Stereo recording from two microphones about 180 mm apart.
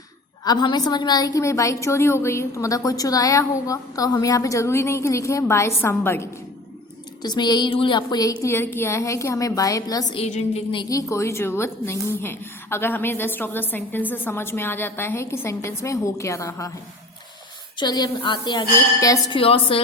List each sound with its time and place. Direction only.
0.4 s a woman's voice: 25° left (ahead or behind)
7.2 s a sound: 25° left (ahead or behind)
8.4 s a woman's voice: 15° left (ahead or behind)
10.2 s a woman's voice: 35° left (ahead or behind); by 16.7 s 15° left (ahead or behind)
17.7 s a sound: 20° left (ahead or behind)
18.9 s a woman's voice: 20° left (ahead or behind)